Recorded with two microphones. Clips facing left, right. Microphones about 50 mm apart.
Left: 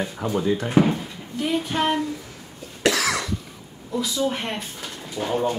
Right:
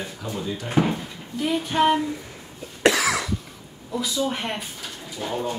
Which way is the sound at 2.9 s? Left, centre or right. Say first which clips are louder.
Even; centre.